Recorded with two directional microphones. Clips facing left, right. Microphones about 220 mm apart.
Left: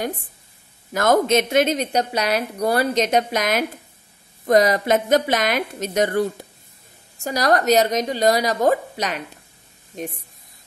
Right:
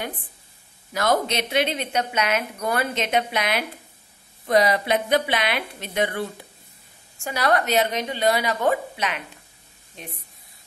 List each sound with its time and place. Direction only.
0.9 s a woman's voice: 50° left (ahead or behind)